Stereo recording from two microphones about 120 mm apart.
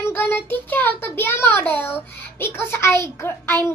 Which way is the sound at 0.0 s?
15° left (ahead or behind).